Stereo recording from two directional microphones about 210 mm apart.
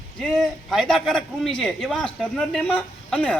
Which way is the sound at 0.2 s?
Centre (ahead or behind).